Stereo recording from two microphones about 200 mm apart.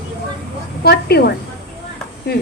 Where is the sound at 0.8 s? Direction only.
50° left (ahead or behind).